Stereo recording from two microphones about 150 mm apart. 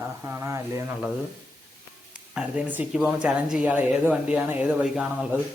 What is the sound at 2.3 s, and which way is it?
Speech, 5° right (ahead or behind).